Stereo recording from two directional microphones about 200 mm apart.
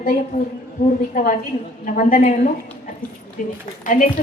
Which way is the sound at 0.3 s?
40° left (ahead or behind).